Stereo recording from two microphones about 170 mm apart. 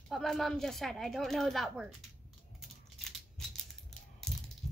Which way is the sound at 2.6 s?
Centre (ahead or behind).